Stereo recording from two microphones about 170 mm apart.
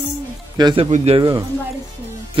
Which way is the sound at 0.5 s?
30° right (ahead or behind).